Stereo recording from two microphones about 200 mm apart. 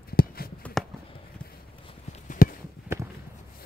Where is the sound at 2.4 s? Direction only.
45° left (ahead or behind).